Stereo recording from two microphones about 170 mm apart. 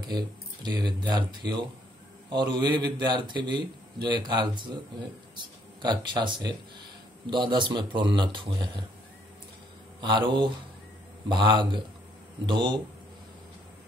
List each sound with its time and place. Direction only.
0.1 s a man's voice: 25° right (ahead or behind)
5.8 s a man's voice: 25° right (ahead or behind)
9.9 s a man's voice: 25° right (ahead or behind)